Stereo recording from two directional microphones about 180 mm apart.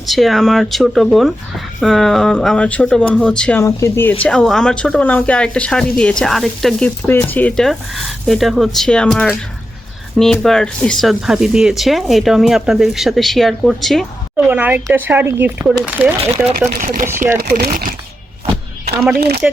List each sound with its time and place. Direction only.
0.0 s speech: centre (ahead or behind)
3.6 s speech: 15° left (ahead or behind); by 14.1 s centre (ahead or behind)
14.3 s speech: 10° right (ahead or behind)
16.8 s speech: 50° right (ahead or behind)
19.1 s speech: 60° right (ahead or behind)